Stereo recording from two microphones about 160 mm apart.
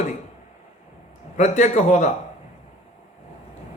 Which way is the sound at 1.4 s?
45° left (ahead or behind).